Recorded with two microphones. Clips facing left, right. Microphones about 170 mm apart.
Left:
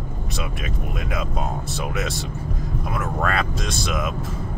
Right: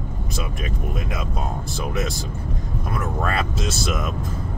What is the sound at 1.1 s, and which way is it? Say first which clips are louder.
Speech: left 1 dB; centre (ahead or behind).